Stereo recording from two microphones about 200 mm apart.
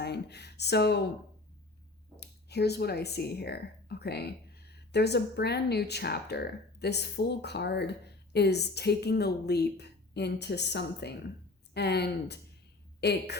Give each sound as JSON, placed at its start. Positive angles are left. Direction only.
{"t": 0.0, "sound": "speech", "side_deg": 55}
{"t": 2.2, "sound": "speech", "side_deg": 55}